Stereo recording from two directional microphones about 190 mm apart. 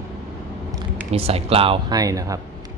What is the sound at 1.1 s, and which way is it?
Speech, 30° right (ahead or behind).